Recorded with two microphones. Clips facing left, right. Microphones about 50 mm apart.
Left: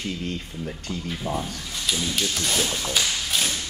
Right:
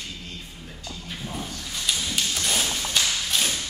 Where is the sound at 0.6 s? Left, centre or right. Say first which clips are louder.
Left 9 dB; left.